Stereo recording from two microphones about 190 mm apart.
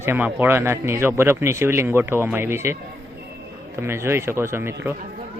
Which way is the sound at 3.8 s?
15° right (ahead or behind).